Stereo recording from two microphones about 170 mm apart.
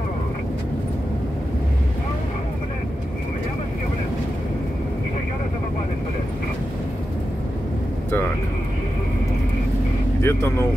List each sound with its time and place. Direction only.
10.2 s speech: 15° left (ahead or behind)